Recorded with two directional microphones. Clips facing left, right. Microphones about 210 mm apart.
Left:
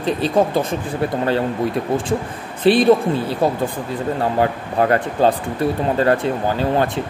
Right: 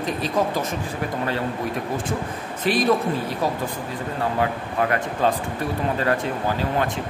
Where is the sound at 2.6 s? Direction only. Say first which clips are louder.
Left 8 dB; 30° left (ahead or behind).